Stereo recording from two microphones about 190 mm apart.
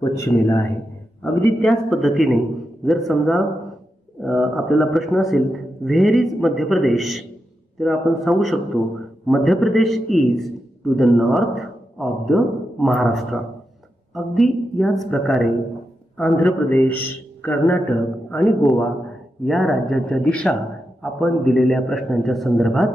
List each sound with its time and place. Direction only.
0.0 s a man's voice: 15° left (ahead or behind)
1.2 s a man's voice: centre (ahead or behind)